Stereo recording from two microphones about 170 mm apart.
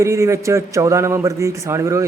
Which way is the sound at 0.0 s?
15° right (ahead or behind).